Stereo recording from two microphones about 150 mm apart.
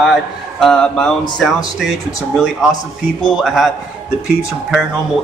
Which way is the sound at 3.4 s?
Centre (ahead or behind).